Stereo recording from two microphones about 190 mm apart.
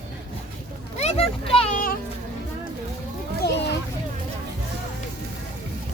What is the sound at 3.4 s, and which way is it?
Children playing, 60° left (ahead or behind).